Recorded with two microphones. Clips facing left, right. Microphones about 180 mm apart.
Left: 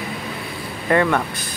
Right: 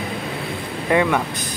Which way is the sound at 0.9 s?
10° right (ahead or behind).